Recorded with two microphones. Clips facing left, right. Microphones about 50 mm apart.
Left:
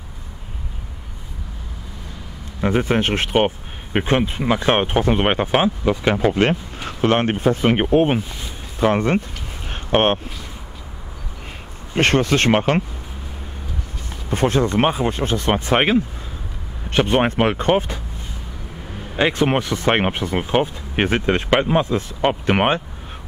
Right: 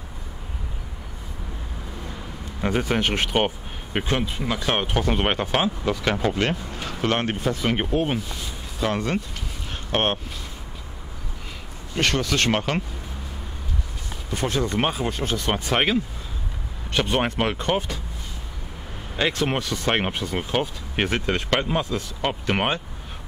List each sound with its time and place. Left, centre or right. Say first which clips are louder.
2.8 s speech: left 4 dB; left
4.0 s speech: left 6 dB; left
9.7 s a sound: left 7 dB; left
11.9 s speech: left 6 dB; left
14.3 s speech: left 6 dB; left
19.1 s speech: left 6 dB; left